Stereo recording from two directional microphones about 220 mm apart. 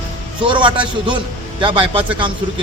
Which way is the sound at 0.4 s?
20° right (ahead or behind).